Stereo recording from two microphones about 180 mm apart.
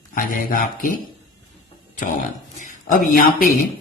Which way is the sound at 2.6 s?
45° left (ahead or behind).